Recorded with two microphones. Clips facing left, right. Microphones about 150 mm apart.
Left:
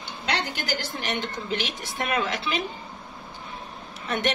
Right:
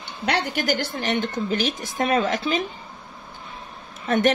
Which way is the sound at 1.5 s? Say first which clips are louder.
Right 5 dB; 45° right (ahead or behind).